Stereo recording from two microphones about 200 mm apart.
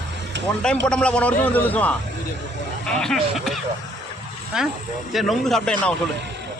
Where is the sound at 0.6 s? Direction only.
5° left (ahead or behind).